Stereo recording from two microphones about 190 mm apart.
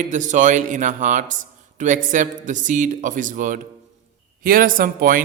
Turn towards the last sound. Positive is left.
turn(degrees=-45)  # may be behind; listen again after turning